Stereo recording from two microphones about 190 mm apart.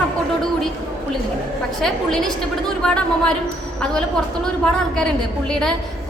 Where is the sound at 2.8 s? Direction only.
5° left (ahead or behind).